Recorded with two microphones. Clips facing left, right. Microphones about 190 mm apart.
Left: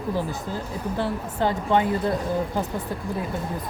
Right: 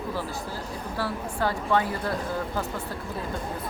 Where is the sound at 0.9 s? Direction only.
20° left (ahead or behind).